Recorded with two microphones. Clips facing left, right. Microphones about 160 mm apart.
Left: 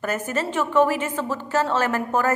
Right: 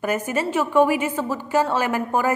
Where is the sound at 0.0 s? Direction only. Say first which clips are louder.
Right 2 dB; 15° right (ahead or behind).